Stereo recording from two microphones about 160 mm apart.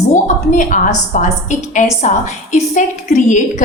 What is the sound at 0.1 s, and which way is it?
A woman's voice, 50° left (ahead or behind).